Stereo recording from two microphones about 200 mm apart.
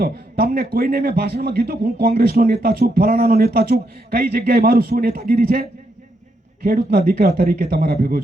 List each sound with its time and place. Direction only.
0.0 s speech: 50° right (ahead or behind)